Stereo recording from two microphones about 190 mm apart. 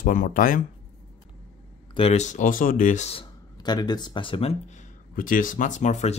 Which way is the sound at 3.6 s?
20° left (ahead or behind).